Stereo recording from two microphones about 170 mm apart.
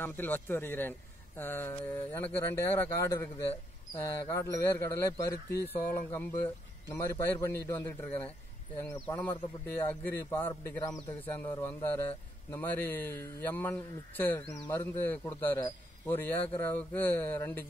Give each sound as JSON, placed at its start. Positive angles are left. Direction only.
{"t": 0.0, "sound": "a man's voice", "side_deg": 10}